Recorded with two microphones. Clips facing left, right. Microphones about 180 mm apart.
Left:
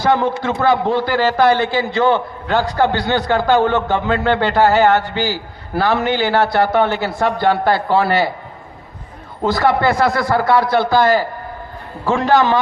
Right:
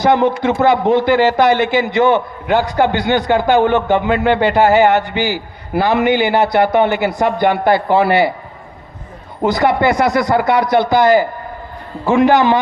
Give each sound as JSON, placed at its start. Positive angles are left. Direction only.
{"t": 0.0, "sound": "a man's voice", "side_deg": -20}
{"t": 9.4, "sound": "a man's voice", "side_deg": -20}